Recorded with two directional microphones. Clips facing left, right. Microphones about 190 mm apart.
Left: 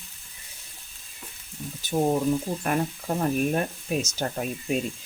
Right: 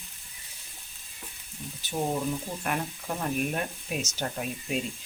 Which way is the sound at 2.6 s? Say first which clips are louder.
Left 5 dB; 40° left (ahead or behind).